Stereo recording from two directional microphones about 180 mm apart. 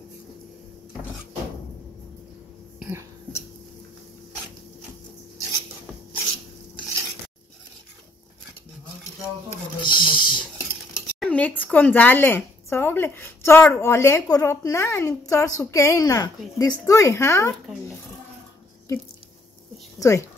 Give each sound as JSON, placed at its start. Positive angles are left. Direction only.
{"t": 2.8, "sound": "cough", "side_deg": -15}
{"t": 9.8, "sound": "speech", "side_deg": 25}
{"t": 11.1, "sound": "speech", "side_deg": 5}
{"t": 20.0, "sound": "speech", "side_deg": 15}